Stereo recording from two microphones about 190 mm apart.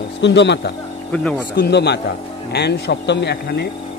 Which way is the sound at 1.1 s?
5° left (ahead or behind).